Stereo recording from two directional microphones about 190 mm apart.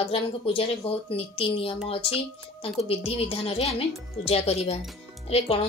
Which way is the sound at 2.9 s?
30° left (ahead or behind).